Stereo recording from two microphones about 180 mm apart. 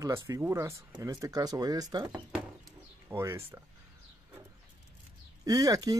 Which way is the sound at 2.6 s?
15° right (ahead or behind).